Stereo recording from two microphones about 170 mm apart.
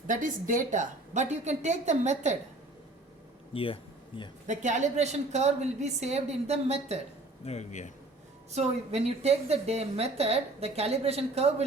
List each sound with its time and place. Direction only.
0.1 s a woman's voice: 50° right (ahead or behind)
3.5 s a woman's voice: 30° left (ahead or behind)
4.4 s a woman's voice: 45° right (ahead or behind)
7.4 s speech: 40° left (ahead or behind)
8.5 s a woman's voice: 40° right (ahead or behind)